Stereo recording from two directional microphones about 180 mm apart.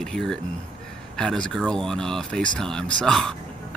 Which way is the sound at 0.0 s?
5° left (ahead or behind).